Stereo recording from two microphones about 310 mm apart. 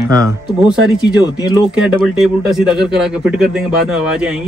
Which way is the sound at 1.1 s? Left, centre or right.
Centre.